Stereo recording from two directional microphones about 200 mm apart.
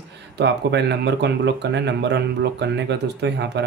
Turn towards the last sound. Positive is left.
turn(degrees=-60)  # may be behind; listen again after turning